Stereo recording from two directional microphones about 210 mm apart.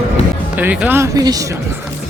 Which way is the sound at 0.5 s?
5° right (ahead or behind).